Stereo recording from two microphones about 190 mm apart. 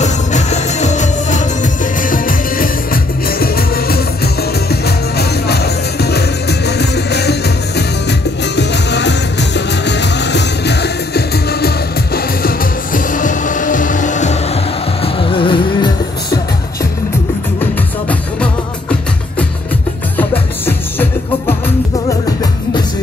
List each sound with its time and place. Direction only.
0.0 s music: 40° left (ahead or behind)
15.1 s music: 25° left (ahead or behind)
18.4 s music: 5° left (ahead or behind)